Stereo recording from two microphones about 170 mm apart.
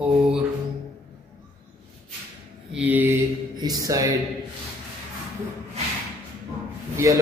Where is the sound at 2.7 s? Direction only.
10° right (ahead or behind).